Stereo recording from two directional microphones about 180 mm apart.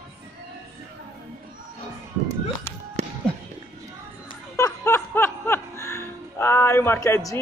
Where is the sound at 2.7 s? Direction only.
10° left (ahead or behind).